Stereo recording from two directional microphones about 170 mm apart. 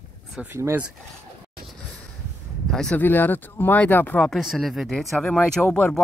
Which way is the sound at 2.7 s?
5° left (ahead or behind).